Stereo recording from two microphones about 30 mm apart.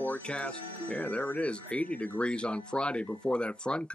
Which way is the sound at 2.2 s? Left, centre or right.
Left.